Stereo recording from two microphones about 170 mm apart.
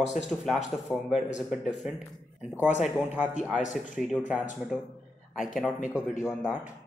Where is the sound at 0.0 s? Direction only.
45° left (ahead or behind).